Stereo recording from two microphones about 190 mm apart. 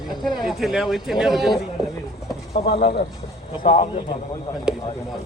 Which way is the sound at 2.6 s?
60° left (ahead or behind).